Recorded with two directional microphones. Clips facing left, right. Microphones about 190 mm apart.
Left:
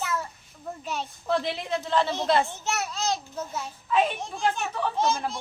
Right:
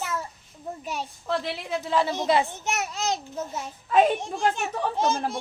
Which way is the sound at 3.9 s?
45° right (ahead or behind).